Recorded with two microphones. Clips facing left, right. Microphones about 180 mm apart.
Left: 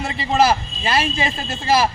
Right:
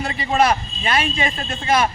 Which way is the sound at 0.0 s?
25° left (ahead or behind).